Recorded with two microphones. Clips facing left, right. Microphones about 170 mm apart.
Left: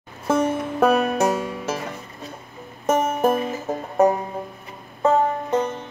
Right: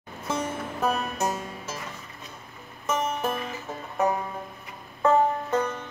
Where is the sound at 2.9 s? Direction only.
50° left (ahead or behind).